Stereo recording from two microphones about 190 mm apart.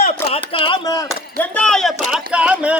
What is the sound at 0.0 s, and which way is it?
Speech, 35° left (ahead or behind).